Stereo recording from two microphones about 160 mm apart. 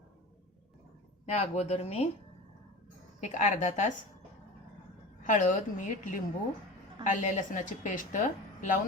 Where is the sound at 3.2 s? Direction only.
50° left (ahead or behind).